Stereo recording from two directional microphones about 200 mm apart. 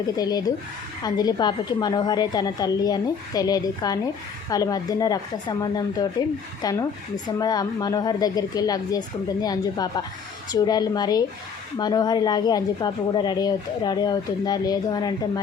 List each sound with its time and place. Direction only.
0.2 s speech: 20° left (ahead or behind)